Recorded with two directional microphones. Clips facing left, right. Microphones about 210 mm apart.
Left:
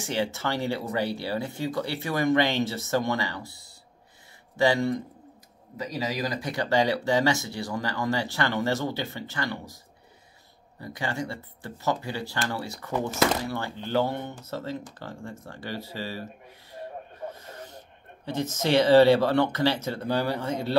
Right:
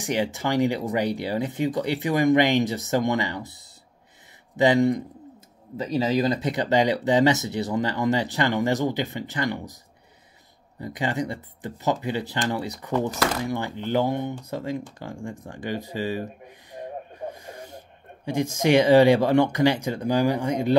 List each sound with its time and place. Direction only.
0.0 s speech: 15° right (ahead or behind)
5.8 s speech: 30° right (ahead or behind)
10.8 s speech: 20° right (ahead or behind)
16.7 s a sound: 15° right (ahead or behind)
18.2 s speech: 15° right (ahead or behind)